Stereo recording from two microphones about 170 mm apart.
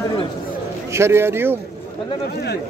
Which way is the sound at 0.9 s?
15° right (ahead or behind).